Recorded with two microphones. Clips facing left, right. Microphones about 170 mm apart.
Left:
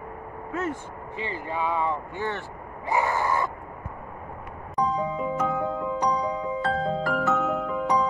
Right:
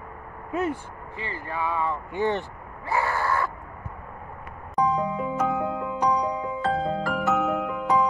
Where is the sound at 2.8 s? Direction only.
15° left (ahead or behind).